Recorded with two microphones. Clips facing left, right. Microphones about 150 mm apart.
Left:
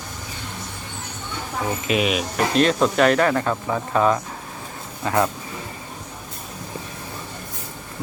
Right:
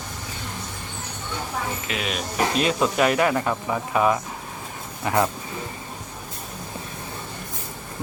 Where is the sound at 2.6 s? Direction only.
5° right (ahead or behind).